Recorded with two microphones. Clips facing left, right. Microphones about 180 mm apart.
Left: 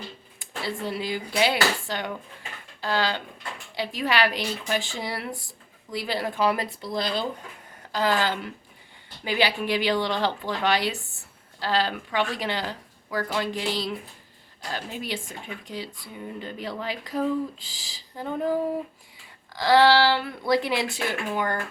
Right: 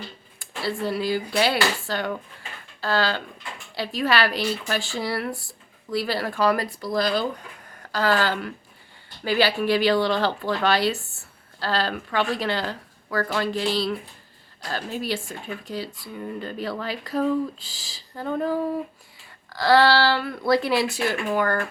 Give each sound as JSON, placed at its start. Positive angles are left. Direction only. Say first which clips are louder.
{"t": 0.3, "sound": "a sound", "louder": "right 4 dB", "side_deg": 20}
{"t": 1.4, "sound": "a woman's voice", "louder": "left 1 dB", "side_deg": 15}
{"t": 19.5, "sound": "a woman's voice", "louder": "even", "side_deg": 15}